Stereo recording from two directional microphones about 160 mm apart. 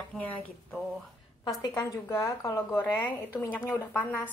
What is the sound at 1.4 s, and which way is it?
A woman's voice, 25° left (ahead or behind).